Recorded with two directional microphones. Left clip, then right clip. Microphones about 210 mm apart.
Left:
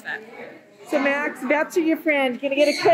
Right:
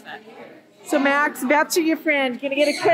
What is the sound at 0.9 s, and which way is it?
Speech, 25° right (ahead or behind).